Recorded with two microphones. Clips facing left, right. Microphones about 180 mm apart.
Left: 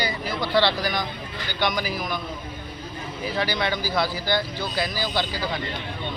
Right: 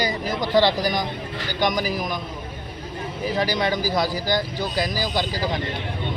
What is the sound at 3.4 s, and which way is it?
Speech, 40° right (ahead or behind).